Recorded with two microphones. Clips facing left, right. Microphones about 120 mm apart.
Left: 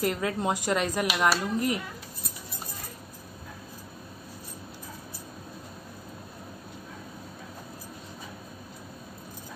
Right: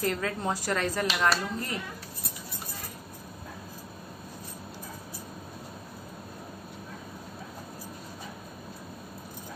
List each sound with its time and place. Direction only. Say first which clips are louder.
0.0 s a woman's voice: left 2 dB; 20° left (ahead or behind)